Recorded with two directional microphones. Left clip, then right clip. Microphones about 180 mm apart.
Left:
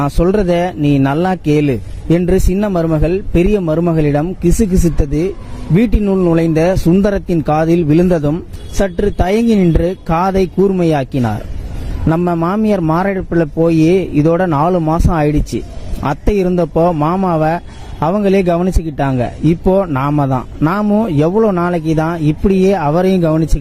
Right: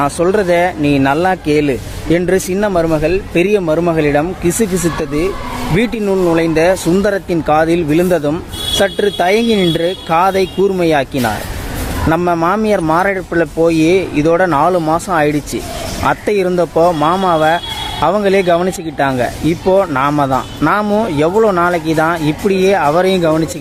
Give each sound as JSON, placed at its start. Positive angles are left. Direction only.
{"t": 0.0, "sound": "speech", "side_deg": 45}
{"t": 5.7, "sound": "speech", "side_deg": 50}
{"t": 14.8, "sound": "speech", "side_deg": 30}
{"t": 15.1, "sound": "a man's voice", "side_deg": 50}
{"t": 21.6, "sound": "speech", "side_deg": 50}